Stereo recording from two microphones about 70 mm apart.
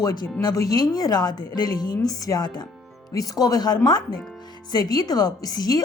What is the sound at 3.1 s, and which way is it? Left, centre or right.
Speech, left.